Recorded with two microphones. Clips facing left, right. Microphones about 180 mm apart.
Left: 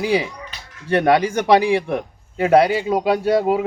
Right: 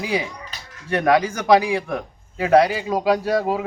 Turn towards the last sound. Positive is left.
turn(degrees=25)  # may be behind; listen again after turning